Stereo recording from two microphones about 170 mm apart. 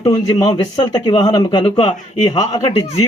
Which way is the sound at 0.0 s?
25° left (ahead or behind).